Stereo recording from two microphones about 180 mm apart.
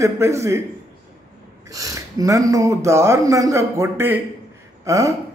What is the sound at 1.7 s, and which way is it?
A man's voice, 20° right (ahead or behind).